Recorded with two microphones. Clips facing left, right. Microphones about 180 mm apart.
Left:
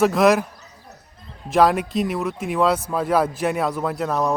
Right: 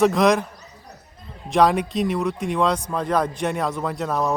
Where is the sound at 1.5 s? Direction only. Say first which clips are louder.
Left 1 dB; centre (ahead or behind).